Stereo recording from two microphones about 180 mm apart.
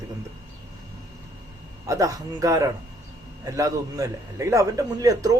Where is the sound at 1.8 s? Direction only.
20° right (ahead or behind).